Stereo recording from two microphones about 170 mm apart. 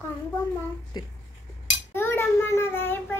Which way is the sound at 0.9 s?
25° left (ahead or behind).